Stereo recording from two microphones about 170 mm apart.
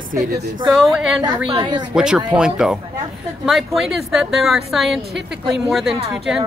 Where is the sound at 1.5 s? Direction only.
25° right (ahead or behind).